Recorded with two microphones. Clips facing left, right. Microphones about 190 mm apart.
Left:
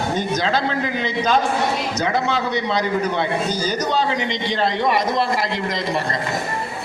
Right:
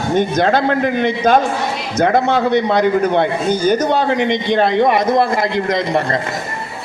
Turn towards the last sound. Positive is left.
turn(degrees=-55)  # may be behind; listen again after turning